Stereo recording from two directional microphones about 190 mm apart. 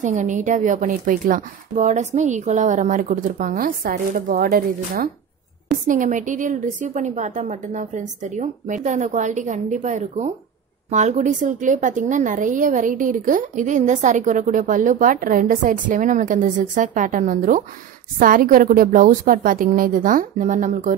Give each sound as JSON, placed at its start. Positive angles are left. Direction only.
{"t": 0.0, "sound": "a woman's voice", "side_deg": -40}